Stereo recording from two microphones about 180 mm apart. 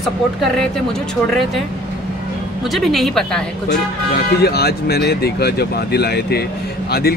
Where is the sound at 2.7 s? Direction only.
Centre (ahead or behind).